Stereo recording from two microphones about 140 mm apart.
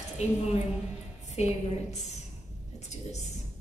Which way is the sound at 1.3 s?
50° left (ahead or behind).